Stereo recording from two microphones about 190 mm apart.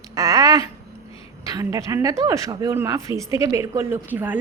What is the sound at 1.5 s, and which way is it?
Speech, 15° right (ahead or behind).